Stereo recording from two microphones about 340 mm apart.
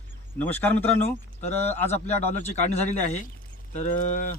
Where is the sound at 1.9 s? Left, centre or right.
Centre.